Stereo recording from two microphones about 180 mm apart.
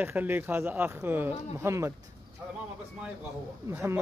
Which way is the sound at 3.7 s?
15° right (ahead or behind).